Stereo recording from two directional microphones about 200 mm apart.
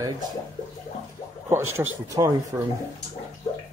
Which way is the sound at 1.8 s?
15° right (ahead or behind).